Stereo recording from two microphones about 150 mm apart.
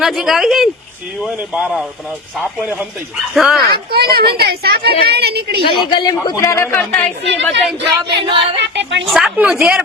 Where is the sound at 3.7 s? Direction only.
90° right.